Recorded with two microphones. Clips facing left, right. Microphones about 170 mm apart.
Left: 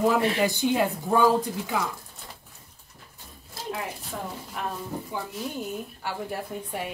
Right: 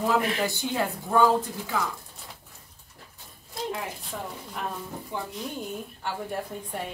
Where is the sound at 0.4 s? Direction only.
15° left (ahead or behind).